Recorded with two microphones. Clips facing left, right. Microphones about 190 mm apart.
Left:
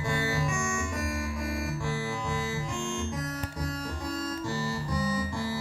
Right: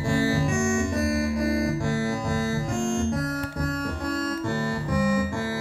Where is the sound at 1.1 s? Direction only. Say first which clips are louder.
Right 9 dB; 75° right (ahead or behind).